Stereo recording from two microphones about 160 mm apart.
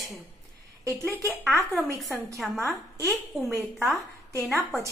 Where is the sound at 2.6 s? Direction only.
15° left (ahead or behind).